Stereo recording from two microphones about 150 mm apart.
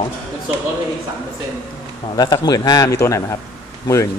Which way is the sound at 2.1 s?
25° left (ahead or behind).